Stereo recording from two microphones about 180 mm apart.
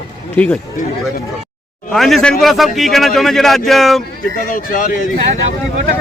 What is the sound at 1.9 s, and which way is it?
Speech, centre (ahead or behind).